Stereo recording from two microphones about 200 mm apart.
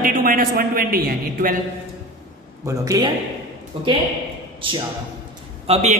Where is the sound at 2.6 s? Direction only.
15° right (ahead or behind).